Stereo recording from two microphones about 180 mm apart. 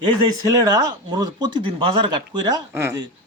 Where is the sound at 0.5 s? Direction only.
20° right (ahead or behind).